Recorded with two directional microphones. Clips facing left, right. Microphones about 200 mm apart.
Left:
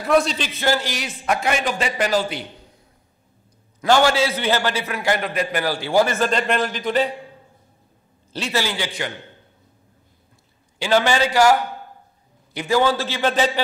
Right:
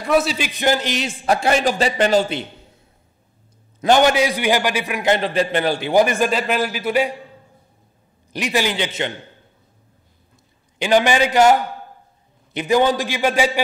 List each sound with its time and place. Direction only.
0.0 s a man's voice: 5° right (ahead or behind); by 2.4 s 25° right (ahead or behind)
3.8 s a man's voice: 20° right (ahead or behind)
8.3 s a man's voice: 15° right (ahead or behind)
10.8 s a man's voice: 15° right (ahead or behind)
12.5 s a man's voice: 20° right (ahead or behind)